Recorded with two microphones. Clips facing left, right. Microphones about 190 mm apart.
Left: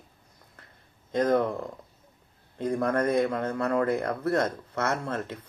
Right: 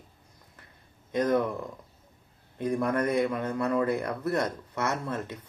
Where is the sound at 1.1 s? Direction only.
15° right (ahead or behind).